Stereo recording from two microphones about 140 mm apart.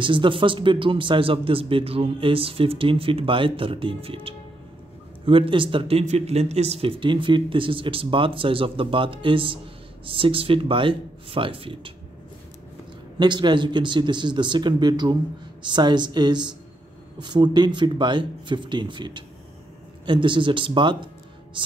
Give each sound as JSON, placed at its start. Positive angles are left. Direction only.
{"t": 0.0, "sound": "speech", "side_deg": -35}
{"t": 13.2, "sound": "speech", "side_deg": -35}